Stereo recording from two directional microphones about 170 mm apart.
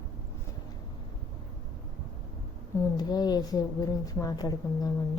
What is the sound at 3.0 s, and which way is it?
A woman's voice, 25° left (ahead or behind).